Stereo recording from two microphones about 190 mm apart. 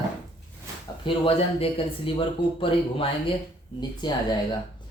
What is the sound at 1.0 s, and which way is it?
Speech, 30° left (ahead or behind).